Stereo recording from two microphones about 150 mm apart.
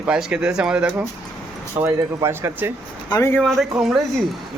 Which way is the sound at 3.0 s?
25° left (ahead or behind).